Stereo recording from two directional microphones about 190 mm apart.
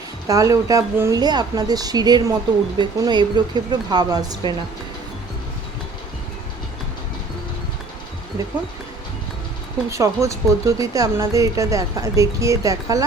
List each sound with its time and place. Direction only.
0.3 s speech: 15° right (ahead or behind)
9.9 s speech: 15° right (ahead or behind)